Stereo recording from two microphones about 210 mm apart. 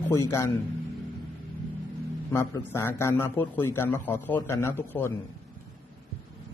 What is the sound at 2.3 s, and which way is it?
A man's voice, 10° left (ahead or behind).